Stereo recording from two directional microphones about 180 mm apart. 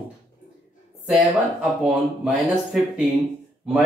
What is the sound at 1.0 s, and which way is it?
Speech, centre (ahead or behind).